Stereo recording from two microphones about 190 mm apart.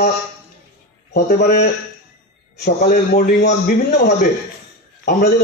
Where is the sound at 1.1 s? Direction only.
55° left (ahead or behind).